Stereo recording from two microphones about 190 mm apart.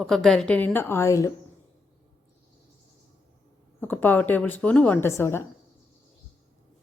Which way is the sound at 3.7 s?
10° left (ahead or behind).